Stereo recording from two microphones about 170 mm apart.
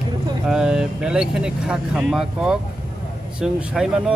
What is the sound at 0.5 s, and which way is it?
Speech, 5° right (ahead or behind).